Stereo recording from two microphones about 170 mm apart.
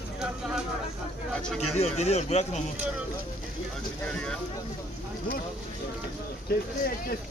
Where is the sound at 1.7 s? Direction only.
40° left (ahead or behind).